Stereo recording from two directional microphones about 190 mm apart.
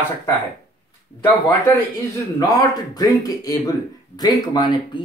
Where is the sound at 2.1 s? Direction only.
20° left (ahead or behind).